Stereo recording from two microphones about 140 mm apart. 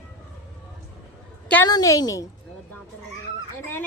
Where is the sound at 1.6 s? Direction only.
25° left (ahead or behind).